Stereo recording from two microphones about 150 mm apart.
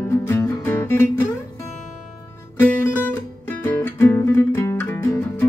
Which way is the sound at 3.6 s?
15° left (ahead or behind).